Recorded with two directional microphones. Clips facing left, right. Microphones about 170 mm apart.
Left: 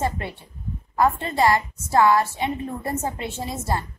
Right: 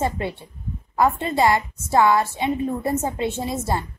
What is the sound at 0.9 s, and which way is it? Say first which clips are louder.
A woman's voice: right 1 dB; 20° right (ahead or behind).